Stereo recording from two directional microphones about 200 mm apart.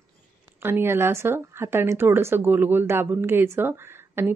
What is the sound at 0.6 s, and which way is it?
Speech, 10° right (ahead or behind).